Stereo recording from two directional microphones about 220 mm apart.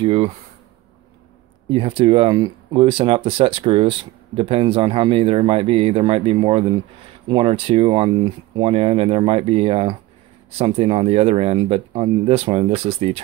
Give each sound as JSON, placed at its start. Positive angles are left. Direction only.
{"t": 0.0, "sound": "speech", "side_deg": -25}
{"t": 1.7, "sound": "speech", "side_deg": -25}